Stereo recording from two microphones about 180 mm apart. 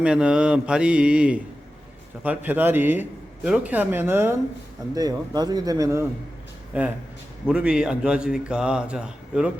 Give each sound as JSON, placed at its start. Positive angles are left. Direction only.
{"t": 0.0, "sound": "a man's voice", "side_deg": -5}